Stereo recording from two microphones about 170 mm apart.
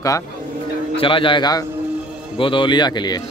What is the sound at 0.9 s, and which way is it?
A man's voice, 30° left (ahead or behind).